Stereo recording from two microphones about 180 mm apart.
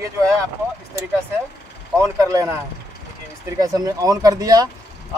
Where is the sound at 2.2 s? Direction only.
20° right (ahead or behind).